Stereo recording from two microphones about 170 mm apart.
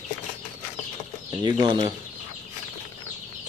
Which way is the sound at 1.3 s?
25° right (ahead or behind).